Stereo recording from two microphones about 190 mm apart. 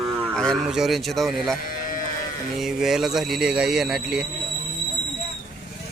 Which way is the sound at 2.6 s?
Centre (ahead or behind).